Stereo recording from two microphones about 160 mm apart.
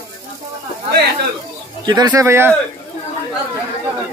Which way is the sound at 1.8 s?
30° right (ahead or behind).